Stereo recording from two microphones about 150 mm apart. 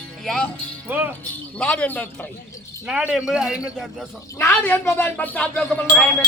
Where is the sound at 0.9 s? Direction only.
10° right (ahead or behind).